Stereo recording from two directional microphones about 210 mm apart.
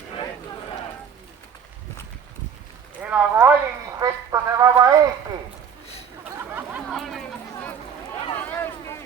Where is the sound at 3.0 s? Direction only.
10° right (ahead or behind).